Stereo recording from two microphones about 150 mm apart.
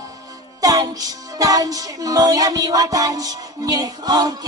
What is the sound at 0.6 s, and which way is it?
Music, 25° right (ahead or behind).